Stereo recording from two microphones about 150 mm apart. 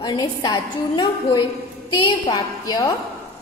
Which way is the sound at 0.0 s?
30° left (ahead or behind).